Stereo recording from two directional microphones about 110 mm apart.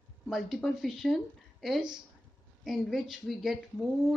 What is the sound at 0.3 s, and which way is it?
Speech, centre (ahead or behind).